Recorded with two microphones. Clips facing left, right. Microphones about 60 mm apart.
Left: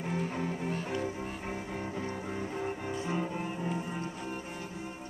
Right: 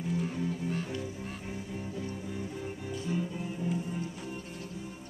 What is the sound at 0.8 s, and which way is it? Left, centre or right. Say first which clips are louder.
Music: left 3 dB; left.